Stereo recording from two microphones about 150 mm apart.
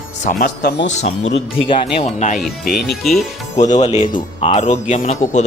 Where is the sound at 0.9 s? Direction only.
50° left (ahead or behind).